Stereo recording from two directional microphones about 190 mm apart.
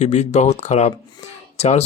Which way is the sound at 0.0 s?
35° left (ahead or behind).